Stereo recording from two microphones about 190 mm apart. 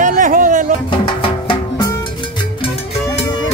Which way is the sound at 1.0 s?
30° left (ahead or behind).